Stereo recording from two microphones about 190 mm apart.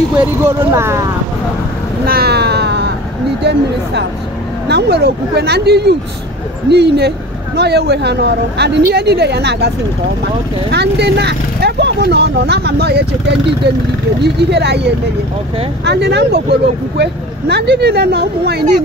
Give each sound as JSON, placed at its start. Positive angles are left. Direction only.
{"t": 0.2, "sound": "speech", "side_deg": -10}
{"t": 2.0, "sound": "a sound", "side_deg": -55}
{"t": 4.6, "sound": "speech", "side_deg": -60}
{"t": 10.7, "sound": "speech", "side_deg": -60}